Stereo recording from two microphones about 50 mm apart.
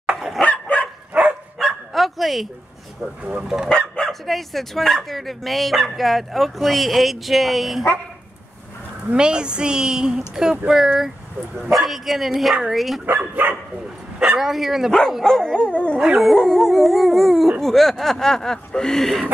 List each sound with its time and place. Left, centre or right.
0.4 s dog: left
1.1 s dog: centre
1.6 s bow-wow: centre
3.3 s a woman's voice: centre
3.6 s bow-wow: centre
4.1 s speech: centre
9.1 s a woman's voice: centre
11.7 s speech: centre
13.0 s speech: right
14.4 s a woman's voice: centre
14.9 s speech: centre
15.2 s dog: centre
15.7 s dog: left
16.2 s speech: centre